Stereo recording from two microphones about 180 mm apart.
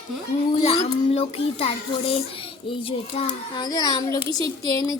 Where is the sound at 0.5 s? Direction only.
35° left (ahead or behind).